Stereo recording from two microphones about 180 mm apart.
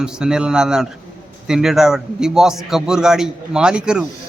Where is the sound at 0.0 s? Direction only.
5° right (ahead or behind).